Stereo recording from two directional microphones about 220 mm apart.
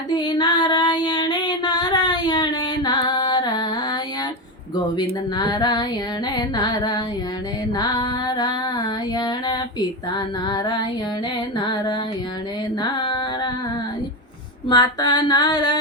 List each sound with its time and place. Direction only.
0.1 s female singing: 20° left (ahead or behind)
4.9 s female singing: 20° left (ahead or behind)
6.3 s carnatic music: 20° left (ahead or behind)
7.7 s music: 20° left (ahead or behind)
9.1 s female singing: 20° left (ahead or behind)
12.8 s music: 20° left (ahead or behind)
14.7 s female singing: 20° left (ahead or behind)